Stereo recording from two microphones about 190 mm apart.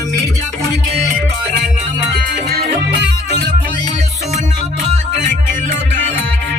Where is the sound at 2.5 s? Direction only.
65° right (ahead or behind).